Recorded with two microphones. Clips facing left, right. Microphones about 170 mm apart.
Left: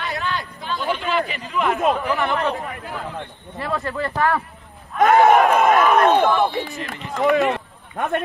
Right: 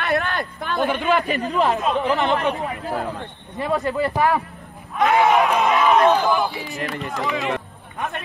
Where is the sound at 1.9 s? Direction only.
20° right (ahead or behind).